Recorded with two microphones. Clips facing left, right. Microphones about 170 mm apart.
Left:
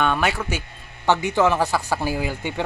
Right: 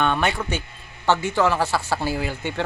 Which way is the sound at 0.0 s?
5° left (ahead or behind).